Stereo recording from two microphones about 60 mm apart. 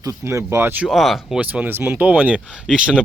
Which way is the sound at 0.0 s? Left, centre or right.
Right.